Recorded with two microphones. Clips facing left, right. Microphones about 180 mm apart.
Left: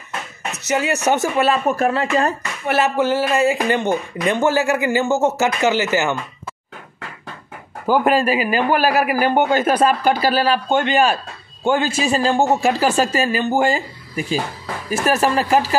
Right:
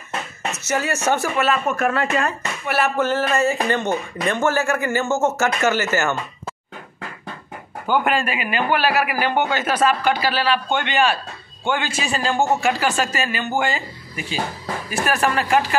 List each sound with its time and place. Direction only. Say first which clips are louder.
0.7 s speech: left 3 dB; 15° left (ahead or behind)
1.4 s speech: left 3 dB; 30° left (ahead or behind)
2.8 s speech: left 2 dB; 10° left (ahead or behind)
7.8 s a man's voice: left 4 dB; 30° left (ahead or behind)